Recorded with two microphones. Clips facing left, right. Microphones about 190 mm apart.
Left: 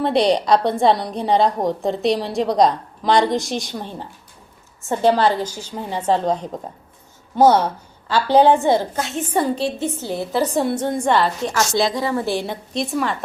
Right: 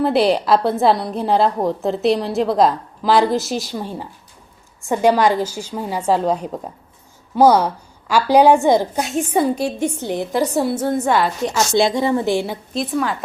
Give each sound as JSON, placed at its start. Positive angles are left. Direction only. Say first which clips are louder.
{"t": 0.0, "sound": "a woman's voice", "louder": "right 1 dB", "side_deg": -5}
{"t": 11.4, "sound": "a woman's voice", "louder": "right 3 dB", "side_deg": -20}
{"t": 12.7, "sound": "a woman's voice", "louder": "right 1 dB", "side_deg": 0}